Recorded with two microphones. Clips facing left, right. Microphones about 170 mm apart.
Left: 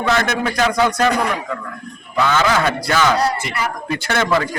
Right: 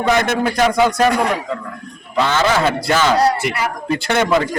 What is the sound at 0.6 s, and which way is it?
Speech, 10° right (ahead or behind).